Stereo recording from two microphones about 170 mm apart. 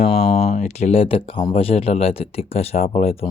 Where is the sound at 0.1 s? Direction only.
35° left (ahead or behind).